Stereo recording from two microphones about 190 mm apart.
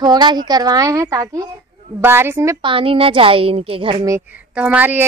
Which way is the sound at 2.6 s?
30° right (ahead or behind).